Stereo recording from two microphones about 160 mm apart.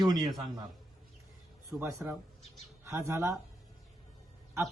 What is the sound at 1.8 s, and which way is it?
Speech, 15° right (ahead or behind).